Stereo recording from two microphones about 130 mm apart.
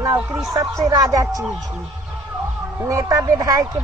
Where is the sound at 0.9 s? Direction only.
25° right (ahead or behind).